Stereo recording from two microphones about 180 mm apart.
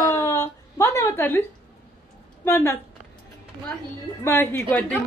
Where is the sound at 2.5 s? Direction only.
15° left (ahead or behind).